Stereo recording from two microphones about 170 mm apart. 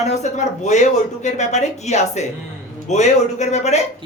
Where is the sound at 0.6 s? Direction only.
40° left (ahead or behind).